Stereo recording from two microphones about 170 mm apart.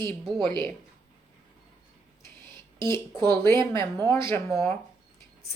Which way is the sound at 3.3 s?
15° left (ahead or behind).